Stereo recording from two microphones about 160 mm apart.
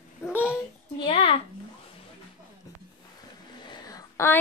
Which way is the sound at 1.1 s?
40° left (ahead or behind).